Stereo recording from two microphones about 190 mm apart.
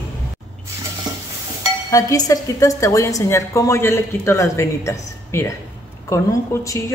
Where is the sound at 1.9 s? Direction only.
20° left (ahead or behind).